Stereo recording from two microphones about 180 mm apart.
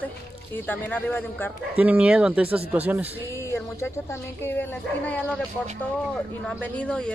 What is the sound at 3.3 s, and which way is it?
Speech, 15° left (ahead or behind).